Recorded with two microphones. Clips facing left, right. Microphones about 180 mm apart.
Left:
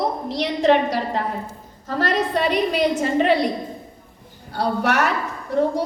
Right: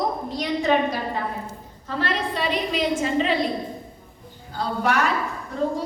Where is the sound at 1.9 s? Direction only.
45° left (ahead or behind).